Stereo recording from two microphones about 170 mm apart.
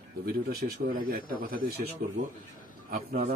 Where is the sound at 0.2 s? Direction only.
65° right (ahead or behind).